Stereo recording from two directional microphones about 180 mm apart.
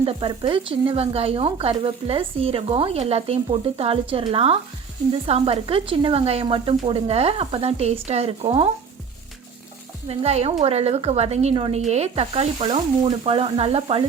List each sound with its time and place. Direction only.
0.0 s speech: 30° right (ahead or behind)
10.1 s speech: 35° right (ahead or behind)